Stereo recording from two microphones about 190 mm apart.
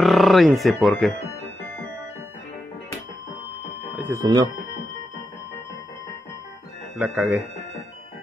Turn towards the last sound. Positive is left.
turn(degrees=-10)  # may be behind; listen again after turning